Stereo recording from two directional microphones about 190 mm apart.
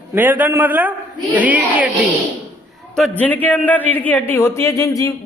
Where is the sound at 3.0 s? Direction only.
10° left (ahead or behind).